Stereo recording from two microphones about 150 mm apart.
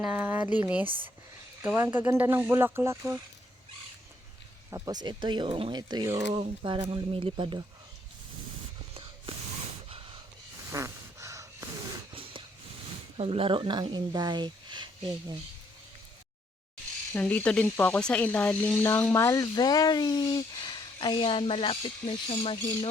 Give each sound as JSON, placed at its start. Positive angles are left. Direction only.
{"t": 0.0, "sound": "speech", "side_deg": -10}
{"t": 1.6, "sound": "speech", "side_deg": -15}
{"t": 4.7, "sound": "speech", "side_deg": -25}
{"t": 10.7, "sound": "a sound", "side_deg": -20}
{"t": 12.1, "sound": "a sound", "side_deg": -35}
{"t": 13.1, "sound": "speech", "side_deg": -40}
{"t": 17.1, "sound": "speech", "side_deg": 10}